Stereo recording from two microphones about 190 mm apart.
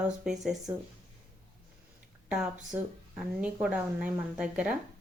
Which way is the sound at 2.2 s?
5° right (ahead or behind).